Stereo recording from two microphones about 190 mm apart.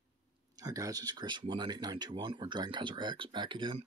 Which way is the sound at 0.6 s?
20° right (ahead or behind).